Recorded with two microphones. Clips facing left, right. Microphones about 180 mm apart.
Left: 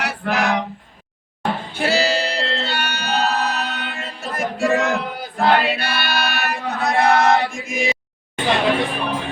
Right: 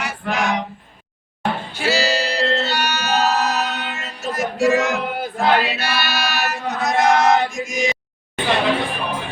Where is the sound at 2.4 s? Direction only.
30° left (ahead or behind).